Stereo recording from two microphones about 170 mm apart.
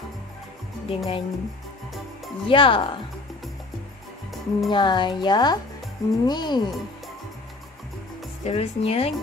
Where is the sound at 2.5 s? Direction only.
30° left (ahead or behind).